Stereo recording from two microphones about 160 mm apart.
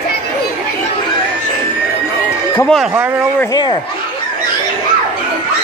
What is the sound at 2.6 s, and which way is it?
Speech, 5° left (ahead or behind).